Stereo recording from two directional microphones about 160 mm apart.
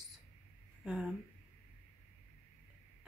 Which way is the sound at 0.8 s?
5° right (ahead or behind).